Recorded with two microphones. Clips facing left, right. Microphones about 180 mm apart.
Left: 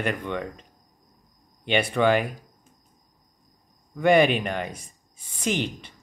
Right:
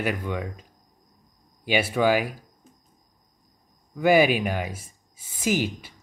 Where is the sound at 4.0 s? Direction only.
5° right (ahead or behind).